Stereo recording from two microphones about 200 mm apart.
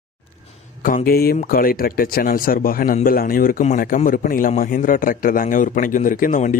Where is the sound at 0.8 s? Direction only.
45° left (ahead or behind).